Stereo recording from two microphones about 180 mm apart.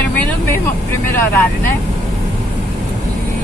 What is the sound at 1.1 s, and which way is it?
Speech, 10° left (ahead or behind).